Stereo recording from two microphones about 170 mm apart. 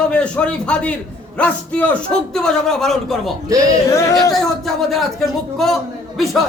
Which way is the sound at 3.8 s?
20° left (ahead or behind).